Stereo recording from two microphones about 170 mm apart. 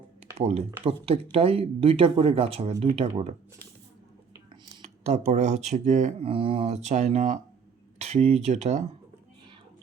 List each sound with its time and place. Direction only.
0.3 s speech: 40° right (ahead or behind)
4.8 s speech: 40° right (ahead or behind)
6.2 s speech: 30° right (ahead or behind)